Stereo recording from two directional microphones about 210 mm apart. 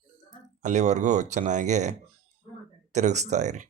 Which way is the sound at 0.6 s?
35° right (ahead or behind).